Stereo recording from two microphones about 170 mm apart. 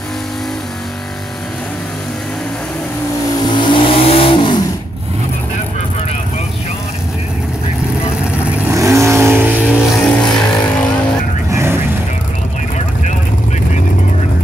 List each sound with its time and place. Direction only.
3.5 s vehicle: 30° left (ahead or behind)
8.5 s vehicle: 10° right (ahead or behind)
9.7 s vehicle: centre (ahead or behind)
11.5 s vehicle: 15° right (ahead or behind)